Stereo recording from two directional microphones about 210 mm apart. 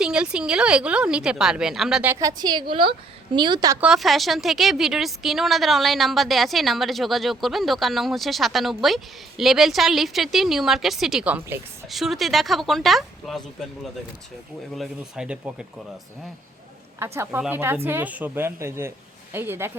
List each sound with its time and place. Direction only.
0.0 s a woman's voice: 5° right (ahead or behind); by 3.8 s 20° right (ahead or behind)
3.8 s a woman's voice: centre (ahead or behind)
14.8 s a woman's voice: 5° right (ahead or behind)
17.0 s speech: 10° right (ahead or behind)